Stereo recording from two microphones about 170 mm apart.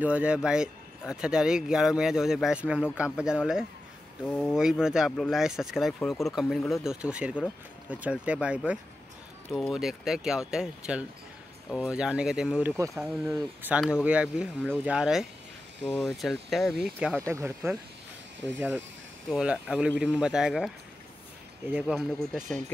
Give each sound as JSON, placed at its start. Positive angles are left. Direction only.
{"t": 0.0, "sound": "speech", "side_deg": -10}
{"t": 12.7, "sound": "speech", "side_deg": -15}
{"t": 13.0, "sound": "speech", "side_deg": -5}
{"t": 17.3, "sound": "speech", "side_deg": -15}